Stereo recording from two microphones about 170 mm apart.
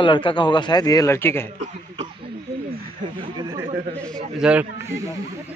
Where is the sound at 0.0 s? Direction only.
30° left (ahead or behind).